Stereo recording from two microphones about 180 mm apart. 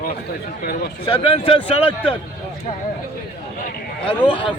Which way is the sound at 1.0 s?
30° left (ahead or behind).